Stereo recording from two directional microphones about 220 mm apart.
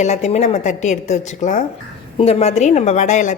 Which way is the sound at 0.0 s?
30° left (ahead or behind).